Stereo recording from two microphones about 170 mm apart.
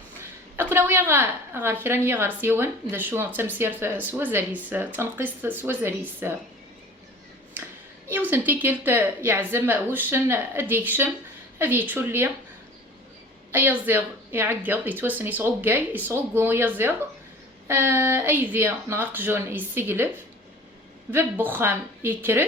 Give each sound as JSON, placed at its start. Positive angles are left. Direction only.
{"t": 0.2, "sound": "a woman's voice", "side_deg": -15}
{"t": 8.0, "sound": "a woman's voice", "side_deg": -10}
{"t": 13.5, "sound": "a woman's voice", "side_deg": -10}
{"t": 21.1, "sound": "a woman's voice", "side_deg": -10}